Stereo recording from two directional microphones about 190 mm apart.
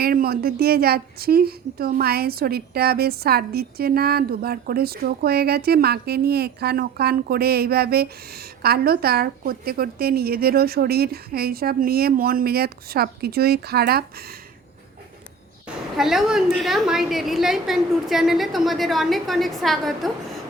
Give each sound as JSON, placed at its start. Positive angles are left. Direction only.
{"t": 0.0, "sound": "a woman's voice", "side_deg": -50}
{"t": 15.6, "sound": "a woman's voice", "side_deg": 0}